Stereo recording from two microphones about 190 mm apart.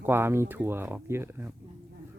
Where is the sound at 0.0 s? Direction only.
10° right (ahead or behind).